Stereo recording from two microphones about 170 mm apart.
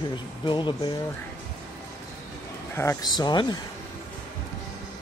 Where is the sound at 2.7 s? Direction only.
20° left (ahead or behind).